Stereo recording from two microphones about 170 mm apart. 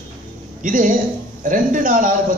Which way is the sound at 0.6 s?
50° right (ahead or behind).